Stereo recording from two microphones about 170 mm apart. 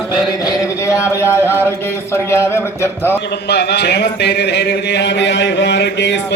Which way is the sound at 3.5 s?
75° left (ahead or behind).